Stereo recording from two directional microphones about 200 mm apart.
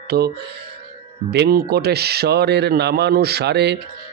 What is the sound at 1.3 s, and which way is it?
Speech, 55° right (ahead or behind).